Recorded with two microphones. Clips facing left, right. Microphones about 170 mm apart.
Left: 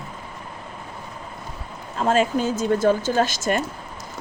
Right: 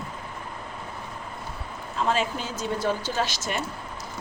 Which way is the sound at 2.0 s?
45° left (ahead or behind).